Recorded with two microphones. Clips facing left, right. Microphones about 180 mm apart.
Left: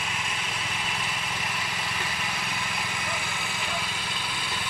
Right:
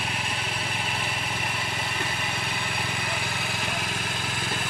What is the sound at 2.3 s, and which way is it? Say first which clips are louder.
Vehicle: right 2 dB; 55° right (ahead or behind).